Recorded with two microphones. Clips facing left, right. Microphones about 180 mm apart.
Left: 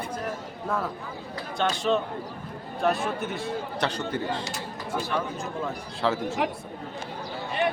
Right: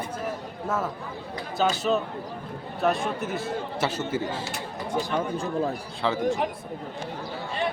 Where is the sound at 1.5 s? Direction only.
5° right (ahead or behind).